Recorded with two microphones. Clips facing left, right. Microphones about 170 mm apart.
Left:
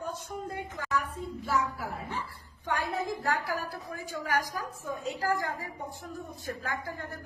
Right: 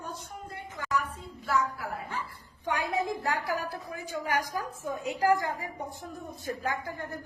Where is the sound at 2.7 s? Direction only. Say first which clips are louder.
Right 2 dB; 20° right (ahead or behind).